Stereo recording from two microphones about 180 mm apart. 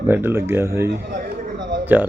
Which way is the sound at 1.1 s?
55° right (ahead or behind).